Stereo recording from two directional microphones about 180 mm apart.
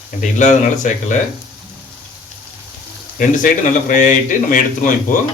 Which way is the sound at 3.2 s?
50° left (ahead or behind).